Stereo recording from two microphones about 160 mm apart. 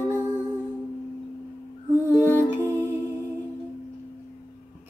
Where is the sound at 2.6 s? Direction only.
15° right (ahead or behind).